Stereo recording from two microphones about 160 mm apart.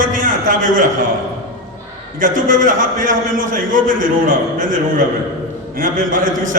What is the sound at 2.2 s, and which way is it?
A man's voice, 55° right (ahead or behind).